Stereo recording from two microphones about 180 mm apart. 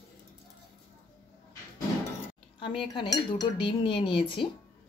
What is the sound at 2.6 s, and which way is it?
Speech, 25° left (ahead or behind).